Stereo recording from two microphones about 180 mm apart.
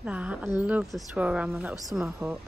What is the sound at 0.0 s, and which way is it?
Speech, 5° right (ahead or behind).